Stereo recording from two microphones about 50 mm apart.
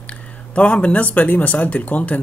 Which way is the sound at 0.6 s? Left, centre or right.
Left.